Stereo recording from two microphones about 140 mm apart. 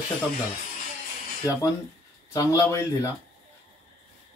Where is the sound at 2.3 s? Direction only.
25° left (ahead or behind).